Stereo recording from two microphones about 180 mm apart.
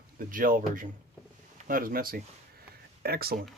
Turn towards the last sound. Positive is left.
turn(degrees=-55)  # may be behind; listen again after turning